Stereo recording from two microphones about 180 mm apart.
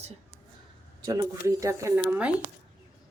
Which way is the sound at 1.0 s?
20° right (ahead or behind).